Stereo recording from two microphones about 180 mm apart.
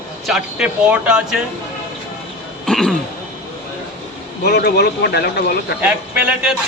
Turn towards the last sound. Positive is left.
turn(degrees=-5)  # may be behind; listen again after turning